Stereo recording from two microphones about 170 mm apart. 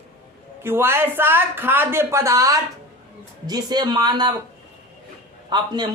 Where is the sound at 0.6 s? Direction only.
15° right (ahead or behind).